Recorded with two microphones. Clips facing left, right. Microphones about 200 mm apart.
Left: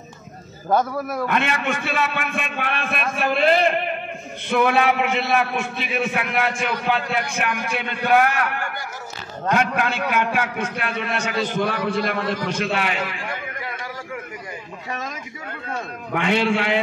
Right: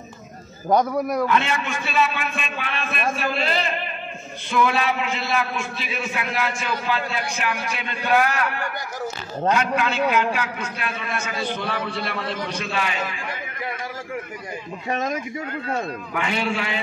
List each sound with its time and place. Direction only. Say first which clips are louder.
1.2 s a man's voice: even; 55° left (ahead or behind)
11.4 s a man's voice: left 3 dB; 45° left (ahead or behind)
16.1 s a man's voice: left 7 dB; 65° left (ahead or behind)